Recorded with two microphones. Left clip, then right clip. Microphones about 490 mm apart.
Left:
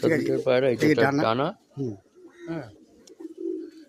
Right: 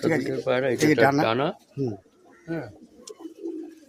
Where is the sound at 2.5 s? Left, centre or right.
Left.